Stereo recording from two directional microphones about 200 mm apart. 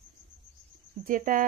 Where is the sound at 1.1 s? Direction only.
45° right (ahead or behind).